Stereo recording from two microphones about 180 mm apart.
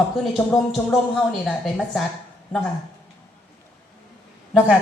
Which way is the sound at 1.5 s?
Centre (ahead or behind).